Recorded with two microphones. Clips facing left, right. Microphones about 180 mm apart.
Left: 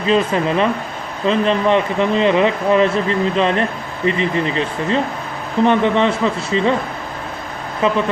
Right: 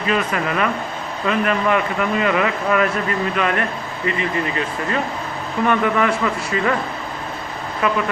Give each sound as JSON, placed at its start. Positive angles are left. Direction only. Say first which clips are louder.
{"t": 0.1, "sound": "speech", "louder": "left 5 dB", "side_deg": 30}